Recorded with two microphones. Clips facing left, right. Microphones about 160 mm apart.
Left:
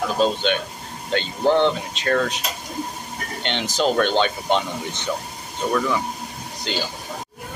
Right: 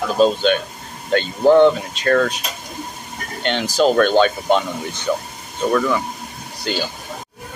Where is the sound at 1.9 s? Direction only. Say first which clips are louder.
Right 4 dB; 15° left (ahead or behind).